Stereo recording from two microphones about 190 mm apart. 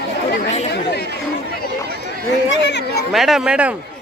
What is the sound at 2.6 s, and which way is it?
Speech, 65° left (ahead or behind).